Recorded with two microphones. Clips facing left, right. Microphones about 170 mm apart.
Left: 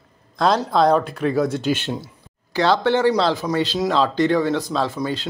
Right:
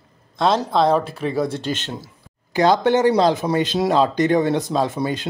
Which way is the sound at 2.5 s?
15° right (ahead or behind).